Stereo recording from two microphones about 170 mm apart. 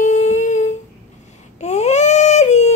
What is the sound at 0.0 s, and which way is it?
Humming, 45° left (ahead or behind).